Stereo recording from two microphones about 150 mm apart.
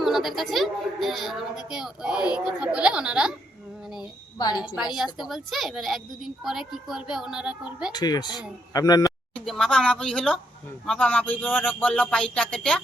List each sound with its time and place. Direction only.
0.0 s a woman's voice: centre (ahead or behind)
4.9 s a woman's voice: centre (ahead or behind)
7.9 s speech: 25° left (ahead or behind)
9.3 s a woman's voice: 5° left (ahead or behind)